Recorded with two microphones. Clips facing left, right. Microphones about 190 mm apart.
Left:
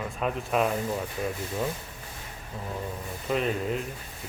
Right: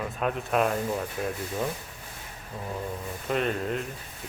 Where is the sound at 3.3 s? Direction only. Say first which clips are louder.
Even; centre (ahead or behind).